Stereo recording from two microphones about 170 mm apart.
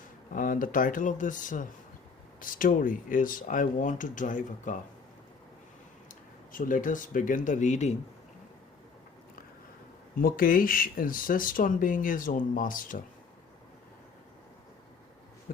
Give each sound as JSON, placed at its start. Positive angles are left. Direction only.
{"t": 0.3, "sound": "speech", "side_deg": 55}
{"t": 6.1, "sound": "speech", "side_deg": 50}
{"t": 10.2, "sound": "speech", "side_deg": 60}
{"t": 15.5, "sound": "speech", "side_deg": 50}